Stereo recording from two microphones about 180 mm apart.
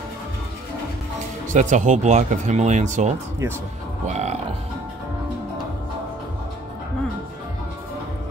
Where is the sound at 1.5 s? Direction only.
45° right (ahead or behind).